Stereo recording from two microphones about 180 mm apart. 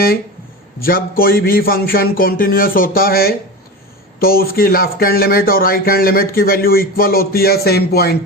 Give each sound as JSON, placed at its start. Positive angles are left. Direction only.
{"t": 0.8, "sound": "speech", "side_deg": 55}